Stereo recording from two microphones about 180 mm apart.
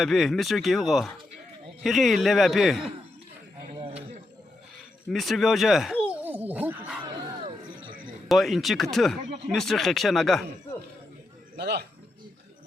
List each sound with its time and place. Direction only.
0.0 s speech: centre (ahead or behind)
5.0 s a sound: centre (ahead or behind)
7.0 s music: 30° right (ahead or behind)
8.3 s speech: centre (ahead or behind)
11.5 s a man's voice: 65° right (ahead or behind)